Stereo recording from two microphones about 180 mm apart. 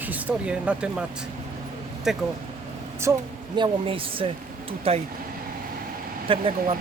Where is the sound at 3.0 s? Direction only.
15° right (ahead or behind).